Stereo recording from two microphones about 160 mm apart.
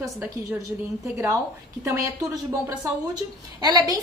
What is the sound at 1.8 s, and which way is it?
A woman's voice, 20° right (ahead or behind).